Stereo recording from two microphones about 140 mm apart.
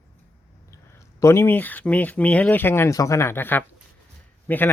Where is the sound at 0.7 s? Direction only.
20° left (ahead or behind).